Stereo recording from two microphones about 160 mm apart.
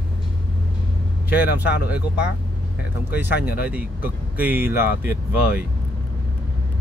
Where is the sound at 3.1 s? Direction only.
10° right (ahead or behind).